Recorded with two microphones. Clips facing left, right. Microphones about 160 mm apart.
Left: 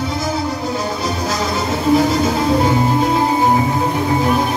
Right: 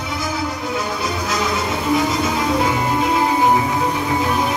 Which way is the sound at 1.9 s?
35° left (ahead or behind).